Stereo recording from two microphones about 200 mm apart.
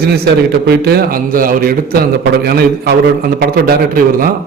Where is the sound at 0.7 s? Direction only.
50° right (ahead or behind).